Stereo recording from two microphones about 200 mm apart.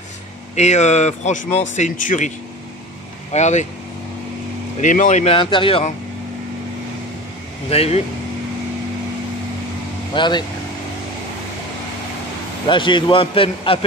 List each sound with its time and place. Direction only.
0.6 s speech: 35° left (ahead or behind)
4.7 s speech: 40° left (ahead or behind)
7.7 s speech: 30° left (ahead or behind)
10.1 s a man's voice: 20° left (ahead or behind)
12.6 s a man's voice: 25° left (ahead or behind)